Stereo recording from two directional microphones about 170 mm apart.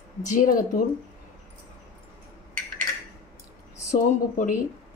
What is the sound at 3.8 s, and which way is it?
Speech, 50° left (ahead or behind).